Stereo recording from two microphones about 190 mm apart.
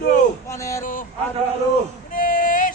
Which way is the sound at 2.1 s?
45° left (ahead or behind).